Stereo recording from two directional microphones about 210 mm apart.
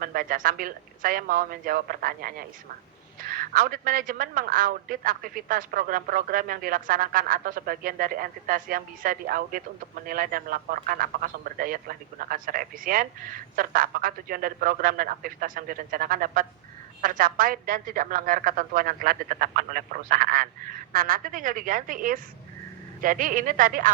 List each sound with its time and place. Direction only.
0.0 s a man's voice: 40° right (ahead or behind)